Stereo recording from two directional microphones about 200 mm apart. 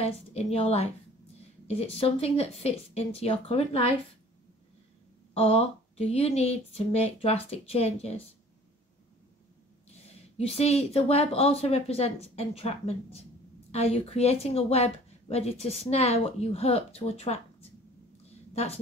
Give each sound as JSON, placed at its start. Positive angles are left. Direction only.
{"t": 0.0, "sound": "speech", "side_deg": 30}
{"t": 5.3, "sound": "speech", "side_deg": 30}
{"t": 9.9, "sound": "a woman's voice", "side_deg": 30}